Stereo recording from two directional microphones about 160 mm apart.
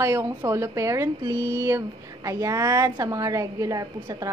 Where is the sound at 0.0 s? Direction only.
15° right (ahead or behind).